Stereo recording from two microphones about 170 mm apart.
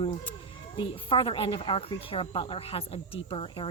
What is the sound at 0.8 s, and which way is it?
A woman's voice, 30° left (ahead or behind).